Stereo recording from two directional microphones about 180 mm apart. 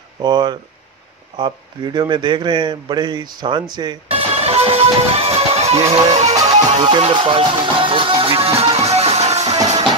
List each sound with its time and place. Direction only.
0.2 s speech: 25° right (ahead or behind)
6.4 s music: 30° right (ahead or behind)